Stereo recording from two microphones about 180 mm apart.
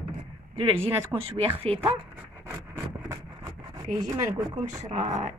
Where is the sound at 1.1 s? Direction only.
10° right (ahead or behind).